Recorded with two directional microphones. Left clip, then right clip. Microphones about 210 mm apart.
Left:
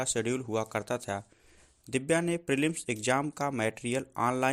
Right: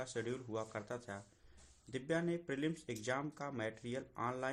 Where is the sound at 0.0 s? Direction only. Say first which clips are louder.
Left 11 dB; 35° left (ahead or behind).